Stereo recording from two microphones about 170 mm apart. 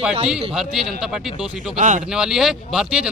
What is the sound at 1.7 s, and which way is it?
Speech, 45° right (ahead or behind).